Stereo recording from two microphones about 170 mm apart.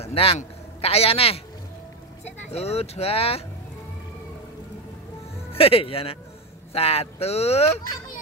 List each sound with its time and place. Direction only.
0.0 s a man's voice: 35° left (ahead or behind)
5.6 s speech: 35° left (ahead or behind)